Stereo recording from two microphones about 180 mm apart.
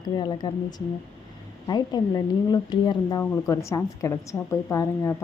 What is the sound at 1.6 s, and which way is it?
Speech, 20° left (ahead or behind).